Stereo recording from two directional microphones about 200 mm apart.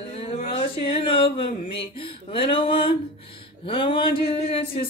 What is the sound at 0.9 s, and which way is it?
Speech, 25° left (ahead or behind).